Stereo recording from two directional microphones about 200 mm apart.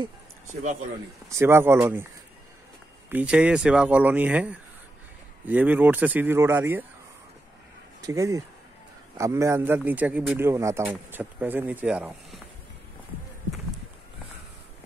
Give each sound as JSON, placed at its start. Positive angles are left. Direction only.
{"t": 1.3, "sound": "a man's voice", "side_deg": -10}
{"t": 3.1, "sound": "a man's voice", "side_deg": -5}
{"t": 8.0, "sound": "a man's voice", "side_deg": -15}